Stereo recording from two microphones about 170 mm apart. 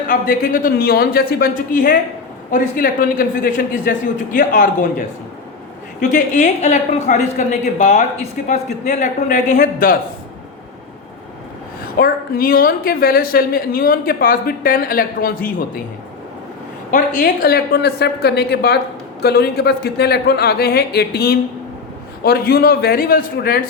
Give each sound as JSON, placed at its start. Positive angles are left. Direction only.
{"t": 0.1, "sound": "a woman's voice", "side_deg": 55}
{"t": 11.9, "sound": "a woman's voice", "side_deg": 60}
{"t": 16.9, "sound": "a woman's voice", "side_deg": 60}